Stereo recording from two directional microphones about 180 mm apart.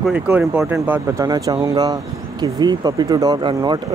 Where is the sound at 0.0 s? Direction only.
5° right (ahead or behind).